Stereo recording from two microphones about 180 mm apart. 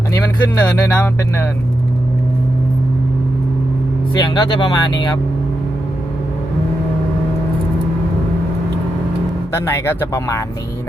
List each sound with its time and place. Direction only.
0.6 s speech: 10° left (ahead or behind)
4.1 s speech: 25° left (ahead or behind)
9.6 s speech: 15° left (ahead or behind)